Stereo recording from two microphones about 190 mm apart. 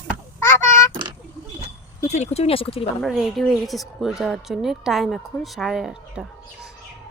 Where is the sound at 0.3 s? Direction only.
15° left (ahead or behind).